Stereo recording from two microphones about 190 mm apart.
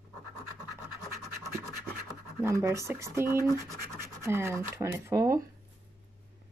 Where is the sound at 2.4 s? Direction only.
15° right (ahead or behind).